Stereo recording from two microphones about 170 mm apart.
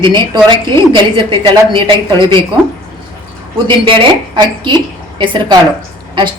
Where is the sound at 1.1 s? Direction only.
30° right (ahead or behind).